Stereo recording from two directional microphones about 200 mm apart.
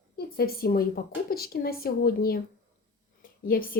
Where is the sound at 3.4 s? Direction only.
45° left (ahead or behind).